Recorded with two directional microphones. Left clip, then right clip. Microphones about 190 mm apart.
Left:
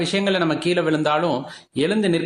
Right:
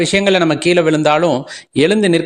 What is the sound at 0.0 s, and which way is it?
Speech, 40° right (ahead or behind).